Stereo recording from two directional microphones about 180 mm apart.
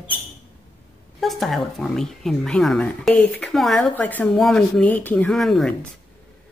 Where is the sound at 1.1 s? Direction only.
Centre (ahead or behind).